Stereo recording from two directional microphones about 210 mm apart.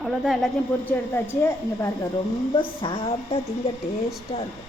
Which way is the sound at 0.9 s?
10° left (ahead or behind).